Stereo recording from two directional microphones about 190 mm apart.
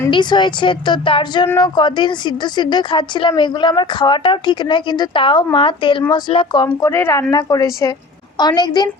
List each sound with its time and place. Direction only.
0.1 s speech: 25° left (ahead or behind)